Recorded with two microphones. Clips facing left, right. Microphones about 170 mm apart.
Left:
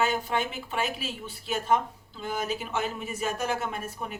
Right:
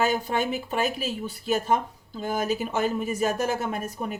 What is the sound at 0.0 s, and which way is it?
Speech, 40° right (ahead or behind).